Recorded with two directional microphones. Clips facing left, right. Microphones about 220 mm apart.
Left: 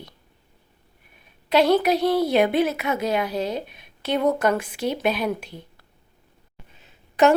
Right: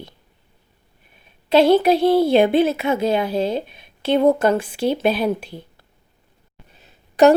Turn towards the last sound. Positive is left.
turn(degrees=-35)  # may be behind; listen again after turning